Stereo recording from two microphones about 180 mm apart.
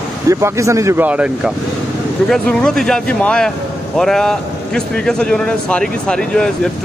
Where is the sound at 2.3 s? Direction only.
5° left (ahead or behind).